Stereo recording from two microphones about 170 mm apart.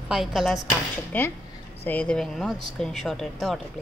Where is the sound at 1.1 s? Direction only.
10° left (ahead or behind).